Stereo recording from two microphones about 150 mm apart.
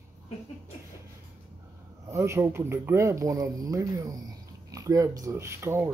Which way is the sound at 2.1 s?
20° right (ahead or behind).